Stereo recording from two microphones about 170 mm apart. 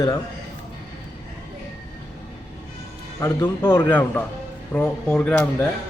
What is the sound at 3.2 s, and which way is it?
Speech, 15° left (ahead or behind).